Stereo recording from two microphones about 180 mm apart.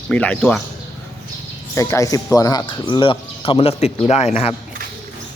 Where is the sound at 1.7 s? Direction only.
15° left (ahead or behind); by 4.6 s 35° left (ahead or behind).